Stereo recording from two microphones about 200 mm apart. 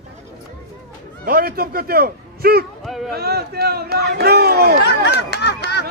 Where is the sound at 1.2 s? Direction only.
50° right (ahead or behind).